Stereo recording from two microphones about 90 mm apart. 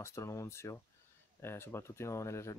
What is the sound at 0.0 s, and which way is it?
Speech, 35° left (ahead or behind).